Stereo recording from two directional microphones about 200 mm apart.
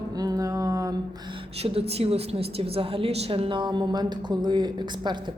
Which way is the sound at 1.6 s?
30° right (ahead or behind).